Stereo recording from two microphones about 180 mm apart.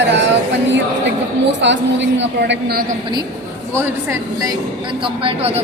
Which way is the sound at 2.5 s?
60° right (ahead or behind).